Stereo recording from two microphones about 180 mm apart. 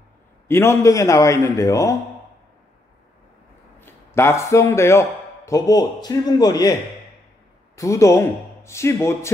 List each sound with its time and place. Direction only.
0.5 s a man's voice: 15° left (ahead or behind)
3.8 s speech: 15° left (ahead or behind)
7.7 s a man's voice: 15° left (ahead or behind)